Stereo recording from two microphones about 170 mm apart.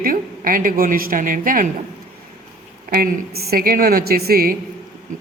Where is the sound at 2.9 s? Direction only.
65° right (ahead or behind).